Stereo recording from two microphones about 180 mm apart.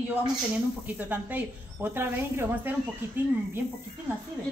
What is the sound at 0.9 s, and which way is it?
A woman's voice, 10° right (ahead or behind).